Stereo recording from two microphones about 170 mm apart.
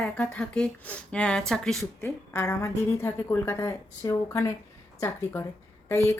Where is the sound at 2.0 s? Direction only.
15° left (ahead or behind).